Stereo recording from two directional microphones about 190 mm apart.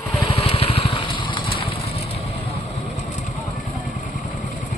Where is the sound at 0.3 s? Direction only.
30° left (ahead or behind).